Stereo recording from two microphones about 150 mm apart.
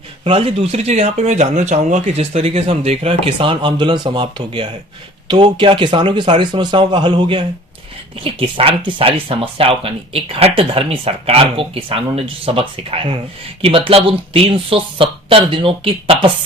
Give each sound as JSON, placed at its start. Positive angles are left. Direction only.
{"t": 0.3, "sound": "speech", "side_deg": -40}